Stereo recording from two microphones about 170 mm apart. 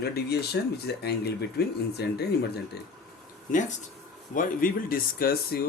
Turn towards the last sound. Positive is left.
turn(degrees=65)  # may be behind; listen again after turning